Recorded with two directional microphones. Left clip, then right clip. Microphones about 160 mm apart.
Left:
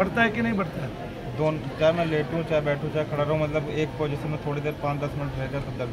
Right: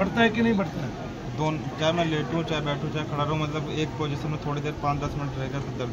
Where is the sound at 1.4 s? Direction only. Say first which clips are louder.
Left 4 dB; 15° left (ahead or behind).